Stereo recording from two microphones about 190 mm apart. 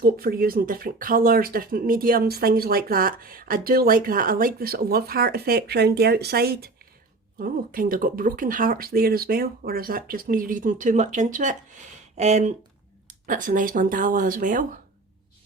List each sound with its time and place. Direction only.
0.0 s speech: 50° right (ahead or behind)